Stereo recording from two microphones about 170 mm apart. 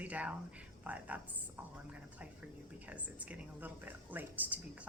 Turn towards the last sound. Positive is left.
turn(degrees=-10)  # may be behind; listen again after turning